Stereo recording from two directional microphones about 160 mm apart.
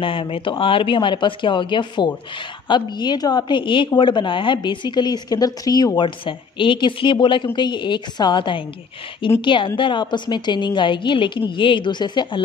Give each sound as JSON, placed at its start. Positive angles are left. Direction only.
{"t": 0.0, "sound": "a woman's voice", "side_deg": 35}